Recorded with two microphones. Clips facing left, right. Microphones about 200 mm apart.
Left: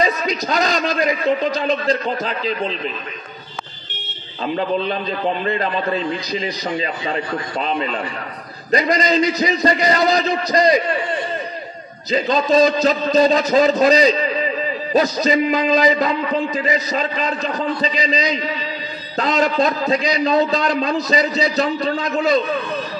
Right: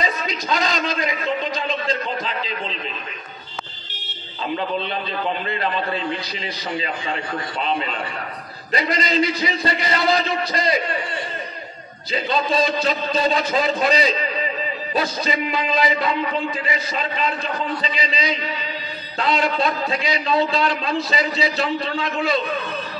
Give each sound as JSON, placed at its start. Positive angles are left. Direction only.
{"t": 0.0, "sound": "a man's voice", "side_deg": 40}
{"t": 4.6, "sound": "a man's voice", "side_deg": 40}
{"t": 12.1, "sound": "a man's voice", "side_deg": 40}